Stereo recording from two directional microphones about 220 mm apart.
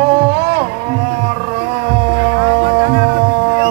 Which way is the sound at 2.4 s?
25° right (ahead or behind).